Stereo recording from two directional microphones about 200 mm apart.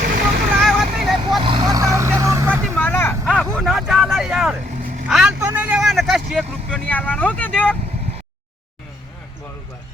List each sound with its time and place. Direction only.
0.6 s vehicle: centre (ahead or behind)
1.4 s vehicle: 25° right (ahead or behind)
2.7 s vehicle: 10° left (ahead or behind)